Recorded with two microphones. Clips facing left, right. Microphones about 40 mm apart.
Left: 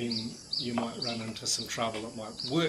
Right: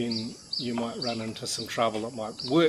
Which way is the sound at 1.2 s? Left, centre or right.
Centre.